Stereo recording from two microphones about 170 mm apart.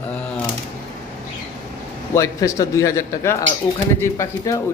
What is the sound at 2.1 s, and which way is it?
A man's voice, 20° left (ahead or behind).